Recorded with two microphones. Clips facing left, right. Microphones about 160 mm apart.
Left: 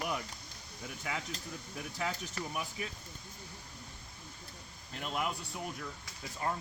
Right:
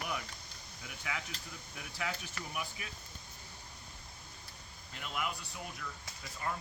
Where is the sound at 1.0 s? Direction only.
40° left (ahead or behind).